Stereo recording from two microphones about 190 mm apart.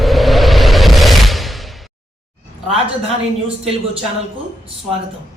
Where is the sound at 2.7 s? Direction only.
30° right (ahead or behind).